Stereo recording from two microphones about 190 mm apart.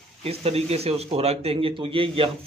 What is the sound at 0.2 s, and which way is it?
A man's voice, 30° right (ahead or behind).